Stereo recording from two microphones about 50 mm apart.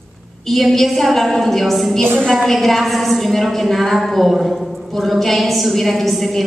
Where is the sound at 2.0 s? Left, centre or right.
Right.